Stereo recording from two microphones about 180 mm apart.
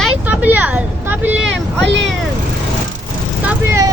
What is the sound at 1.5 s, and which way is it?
Vehicle, 85° right.